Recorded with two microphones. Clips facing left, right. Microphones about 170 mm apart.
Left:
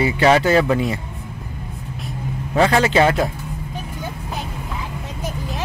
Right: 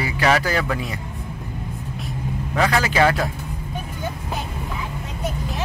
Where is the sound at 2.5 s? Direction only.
25° left (ahead or behind).